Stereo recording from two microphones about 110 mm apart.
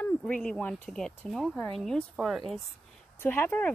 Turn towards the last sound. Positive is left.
turn(degrees=20)  # may be behind; listen again after turning